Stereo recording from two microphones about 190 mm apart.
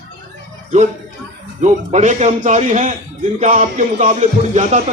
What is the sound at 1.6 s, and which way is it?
A man's voice, 40° right (ahead or behind).